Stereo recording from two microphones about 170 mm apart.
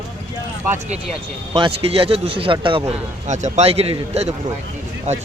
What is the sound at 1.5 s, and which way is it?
Speech, 35° right (ahead or behind).